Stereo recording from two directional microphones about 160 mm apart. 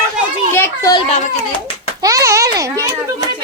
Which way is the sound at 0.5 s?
15° left (ahead or behind).